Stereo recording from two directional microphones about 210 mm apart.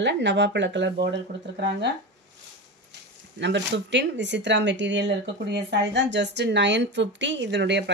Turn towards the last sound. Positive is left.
turn(degrees=-55)  # may be behind; listen again after turning